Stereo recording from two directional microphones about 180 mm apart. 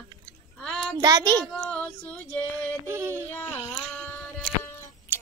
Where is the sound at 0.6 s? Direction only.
5° left (ahead or behind).